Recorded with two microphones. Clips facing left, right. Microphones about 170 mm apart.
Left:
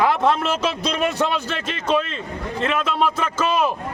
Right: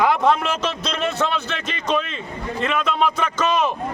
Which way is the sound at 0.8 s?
10° left (ahead or behind).